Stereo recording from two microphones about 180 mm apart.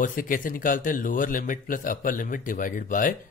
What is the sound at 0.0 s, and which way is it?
Speech, 50° left (ahead or behind).